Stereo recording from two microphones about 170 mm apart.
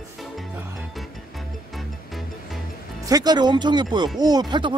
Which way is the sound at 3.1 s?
25° right (ahead or behind).